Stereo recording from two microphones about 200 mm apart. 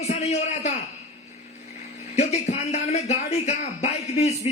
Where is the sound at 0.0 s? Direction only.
35° left (ahead or behind).